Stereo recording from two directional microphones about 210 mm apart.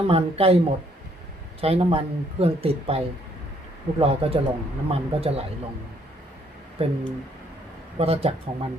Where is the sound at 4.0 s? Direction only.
25° right (ahead or behind).